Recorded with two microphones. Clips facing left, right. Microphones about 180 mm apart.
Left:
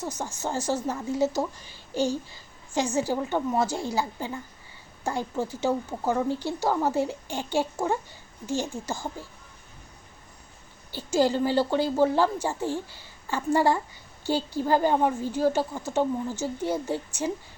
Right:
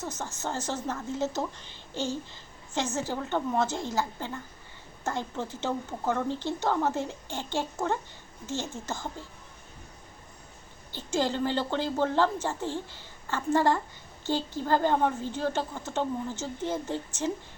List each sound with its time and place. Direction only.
0.0 s a woman's voice: 10° left (ahead or behind)
10.9 s a woman's voice: 10° left (ahead or behind)